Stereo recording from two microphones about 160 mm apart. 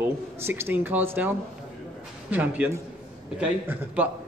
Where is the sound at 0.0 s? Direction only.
15° right (ahead or behind).